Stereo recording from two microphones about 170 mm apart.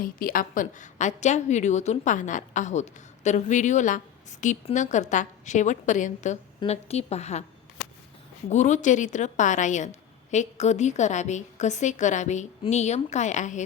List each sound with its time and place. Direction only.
0.0 s a woman's voice: 55° left (ahead or behind); by 7.4 s 40° left (ahead or behind)
8.4 s a woman's voice: 45° left (ahead or behind)